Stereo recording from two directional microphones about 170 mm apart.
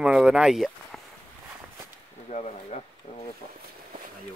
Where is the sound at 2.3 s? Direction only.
45° left (ahead or behind).